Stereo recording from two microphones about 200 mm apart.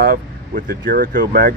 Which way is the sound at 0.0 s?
45° right (ahead or behind).